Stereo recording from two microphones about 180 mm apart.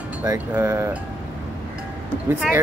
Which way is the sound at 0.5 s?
15° right (ahead or behind).